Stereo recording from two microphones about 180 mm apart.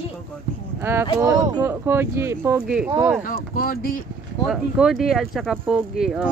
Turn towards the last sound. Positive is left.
turn(degrees=0)  # may be behind; listen again after turning